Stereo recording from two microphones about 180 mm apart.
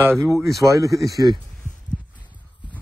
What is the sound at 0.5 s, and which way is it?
Speech, centre (ahead or behind).